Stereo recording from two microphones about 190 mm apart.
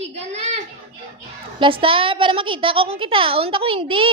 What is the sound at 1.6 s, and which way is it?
A woman's voice, 25° right (ahead or behind).